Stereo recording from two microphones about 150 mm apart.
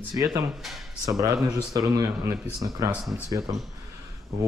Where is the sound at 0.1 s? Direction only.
25° right (ahead or behind).